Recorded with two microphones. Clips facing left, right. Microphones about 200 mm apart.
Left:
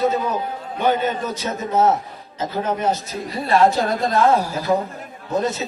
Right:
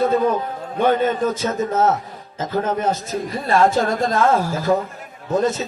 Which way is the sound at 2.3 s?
50° right (ahead or behind).